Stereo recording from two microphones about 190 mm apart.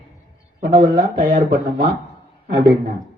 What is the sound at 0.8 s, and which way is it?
Speech, 40° right (ahead or behind).